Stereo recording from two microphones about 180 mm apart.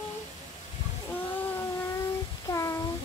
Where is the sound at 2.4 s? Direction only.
20° left (ahead or behind).